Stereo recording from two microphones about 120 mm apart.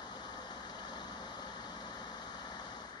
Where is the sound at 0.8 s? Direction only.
40° left (ahead or behind).